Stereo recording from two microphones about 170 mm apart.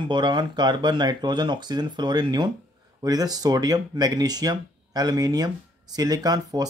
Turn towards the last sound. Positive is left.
turn(degrees=-20)  # may be behind; listen again after turning